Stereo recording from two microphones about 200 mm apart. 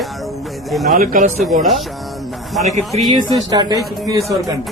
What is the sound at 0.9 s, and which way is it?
Speech, 45° right (ahead or behind).